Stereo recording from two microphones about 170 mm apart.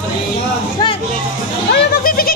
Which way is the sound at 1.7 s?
65° left (ahead or behind).